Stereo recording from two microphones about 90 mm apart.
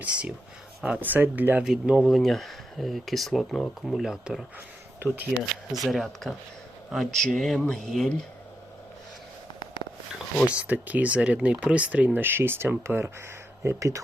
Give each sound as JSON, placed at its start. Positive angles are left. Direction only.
{"t": 0.0, "sound": "speech", "side_deg": -15}
{"t": 1.6, "sound": "speech", "side_deg": -10}
{"t": 4.9, "sound": "speech", "side_deg": -20}
{"t": 5.4, "sound": "speech", "side_deg": 0}
{"t": 10.4, "sound": "speech", "side_deg": -15}